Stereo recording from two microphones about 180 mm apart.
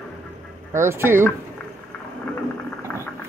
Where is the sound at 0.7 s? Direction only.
15° right (ahead or behind).